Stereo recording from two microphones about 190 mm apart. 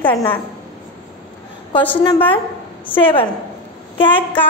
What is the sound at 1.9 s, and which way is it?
A woman's voice, 20° left (ahead or behind).